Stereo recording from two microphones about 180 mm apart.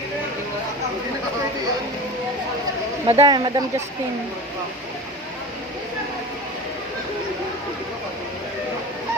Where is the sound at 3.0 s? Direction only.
25° right (ahead or behind).